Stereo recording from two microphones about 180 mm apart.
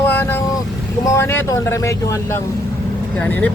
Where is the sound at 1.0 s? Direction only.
15° left (ahead or behind).